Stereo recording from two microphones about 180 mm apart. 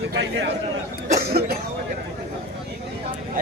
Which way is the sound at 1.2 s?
60° right (ahead or behind).